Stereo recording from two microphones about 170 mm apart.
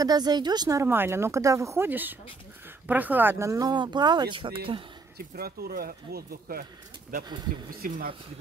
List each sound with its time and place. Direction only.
0.0 s speech: 25° right (ahead or behind)
5.1 s speech: 65° right (ahead or behind)
7.8 s speech: 55° right (ahead or behind)